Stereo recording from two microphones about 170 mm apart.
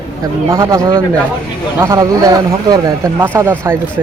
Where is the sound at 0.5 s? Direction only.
15° right (ahead or behind).